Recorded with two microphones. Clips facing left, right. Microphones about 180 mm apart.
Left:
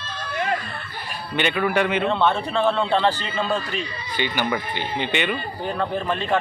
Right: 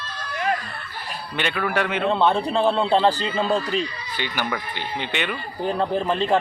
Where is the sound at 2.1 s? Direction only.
35° right (ahead or behind).